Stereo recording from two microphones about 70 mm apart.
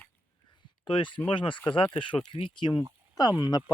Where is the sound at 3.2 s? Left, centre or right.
Left.